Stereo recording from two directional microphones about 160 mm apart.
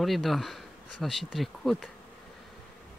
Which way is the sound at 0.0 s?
Centre (ahead or behind).